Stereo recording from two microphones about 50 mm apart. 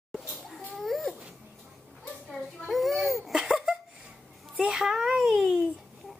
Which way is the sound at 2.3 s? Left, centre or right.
Centre.